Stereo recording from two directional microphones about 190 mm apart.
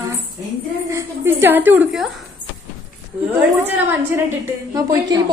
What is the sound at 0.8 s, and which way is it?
A woman's voice, 15° right (ahead or behind).